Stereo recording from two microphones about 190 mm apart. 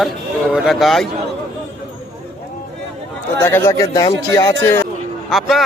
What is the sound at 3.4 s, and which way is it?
A man's voice, 15° left (ahead or behind).